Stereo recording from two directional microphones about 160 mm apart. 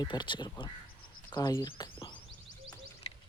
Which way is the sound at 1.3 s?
25° left (ahead or behind).